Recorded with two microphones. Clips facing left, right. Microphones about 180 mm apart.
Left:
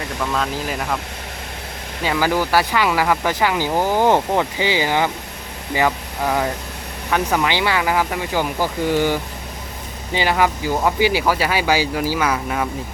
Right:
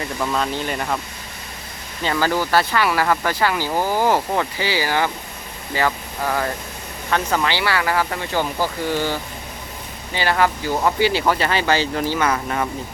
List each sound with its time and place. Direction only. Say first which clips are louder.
0.2 s speech: even; 5° right (ahead or behind)
2.0 s speech: left 1 dB; 10° left (ahead or behind)